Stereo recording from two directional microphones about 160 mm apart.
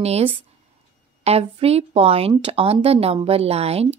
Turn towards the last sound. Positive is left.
turn(degrees=-40)  # may be behind; listen again after turning